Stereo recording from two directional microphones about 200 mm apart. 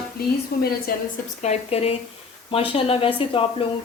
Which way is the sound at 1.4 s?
35° left (ahead or behind).